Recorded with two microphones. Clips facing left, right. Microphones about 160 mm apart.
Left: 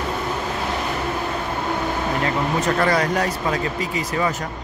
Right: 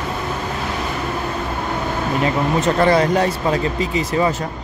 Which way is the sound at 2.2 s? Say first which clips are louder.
Right 6 dB; 25° right (ahead or behind).